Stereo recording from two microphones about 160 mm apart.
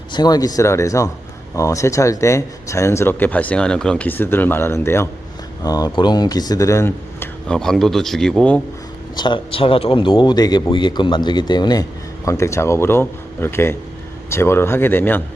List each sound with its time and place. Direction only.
0.1 s a man's voice: 25° left (ahead or behind); by 8.6 s 5° left (ahead or behind)
9.1 s a man's voice: 30° left (ahead or behind); by 15.2 s 15° left (ahead or behind)